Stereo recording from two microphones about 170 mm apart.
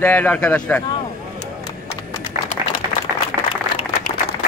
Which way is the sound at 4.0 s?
60° left (ahead or behind).